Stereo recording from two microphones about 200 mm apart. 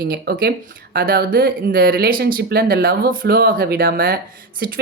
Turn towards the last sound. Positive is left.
turn(degrees=-45)  # may be behind; listen again after turning